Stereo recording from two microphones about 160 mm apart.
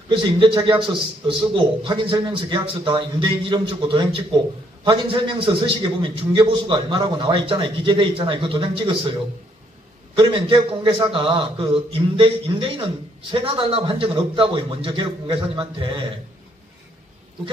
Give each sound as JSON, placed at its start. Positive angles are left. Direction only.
{"t": 0.1, "sound": "a man's voice", "side_deg": -30}
{"t": 10.1, "sound": "a man's voice", "side_deg": -35}